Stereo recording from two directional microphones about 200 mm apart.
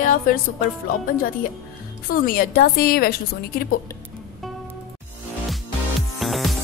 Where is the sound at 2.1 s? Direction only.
45° left (ahead or behind).